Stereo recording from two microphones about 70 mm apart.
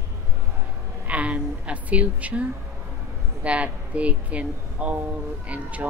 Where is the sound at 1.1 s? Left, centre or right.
Centre.